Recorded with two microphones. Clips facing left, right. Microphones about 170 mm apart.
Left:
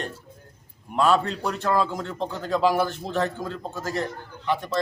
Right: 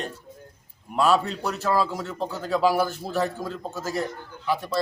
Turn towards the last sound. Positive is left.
turn(degrees=-5)  # may be behind; listen again after turning